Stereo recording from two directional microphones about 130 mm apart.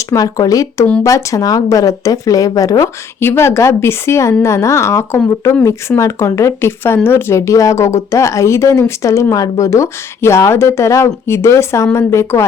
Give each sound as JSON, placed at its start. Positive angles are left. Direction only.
{"t": 0.1, "sound": "speech", "side_deg": 25}